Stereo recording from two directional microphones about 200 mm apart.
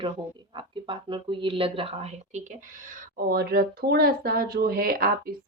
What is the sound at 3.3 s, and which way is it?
Speech, 50° right (ahead or behind).